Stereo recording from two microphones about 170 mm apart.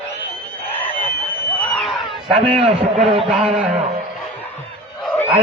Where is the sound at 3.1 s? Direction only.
40° right (ahead or behind).